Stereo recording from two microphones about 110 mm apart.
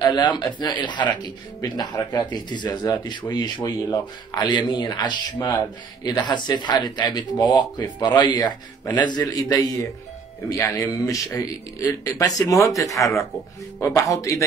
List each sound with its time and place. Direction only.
0.0 s speech: 40° left (ahead or behind)